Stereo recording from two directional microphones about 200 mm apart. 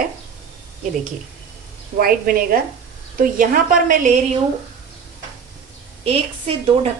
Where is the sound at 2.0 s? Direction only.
45° right (ahead or behind).